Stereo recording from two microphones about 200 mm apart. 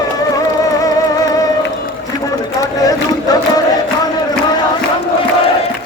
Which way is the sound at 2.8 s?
20° left (ahead or behind).